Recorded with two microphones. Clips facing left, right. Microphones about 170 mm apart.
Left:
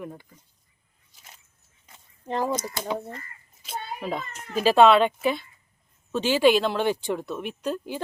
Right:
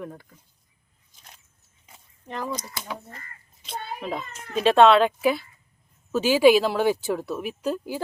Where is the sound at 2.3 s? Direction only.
30° left (ahead or behind).